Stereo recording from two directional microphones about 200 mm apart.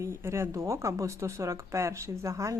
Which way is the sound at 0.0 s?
15° right (ahead or behind).